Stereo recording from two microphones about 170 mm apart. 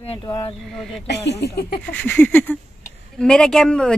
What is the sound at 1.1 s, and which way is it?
Speech, 90° left.